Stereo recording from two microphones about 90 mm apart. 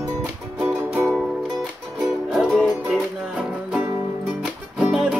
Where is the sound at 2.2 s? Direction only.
Centre (ahead or behind).